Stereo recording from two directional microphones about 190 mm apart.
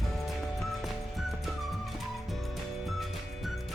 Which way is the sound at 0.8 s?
Centre (ahead or behind).